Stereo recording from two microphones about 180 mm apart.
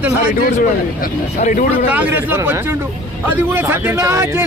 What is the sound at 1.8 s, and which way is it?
Speech, 10° right (ahead or behind).